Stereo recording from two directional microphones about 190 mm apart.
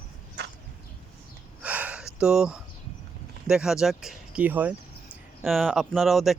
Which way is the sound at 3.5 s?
5° right (ahead or behind).